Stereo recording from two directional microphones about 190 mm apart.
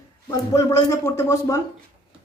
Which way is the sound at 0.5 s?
15° left (ahead or behind).